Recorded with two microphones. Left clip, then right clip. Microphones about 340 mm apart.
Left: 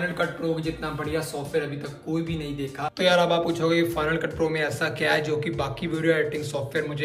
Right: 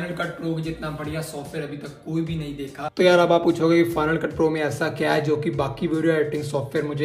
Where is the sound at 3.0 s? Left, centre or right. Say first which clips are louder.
Right 4 dB; centre.